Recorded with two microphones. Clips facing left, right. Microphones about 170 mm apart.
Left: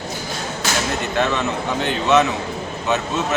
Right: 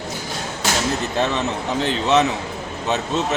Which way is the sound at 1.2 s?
35° right (ahead or behind).